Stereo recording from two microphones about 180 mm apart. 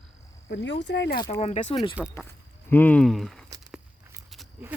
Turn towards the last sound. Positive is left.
turn(degrees=0)  # may be behind; listen again after turning